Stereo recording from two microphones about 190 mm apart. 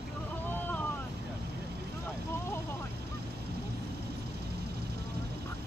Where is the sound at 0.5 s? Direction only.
10° left (ahead or behind).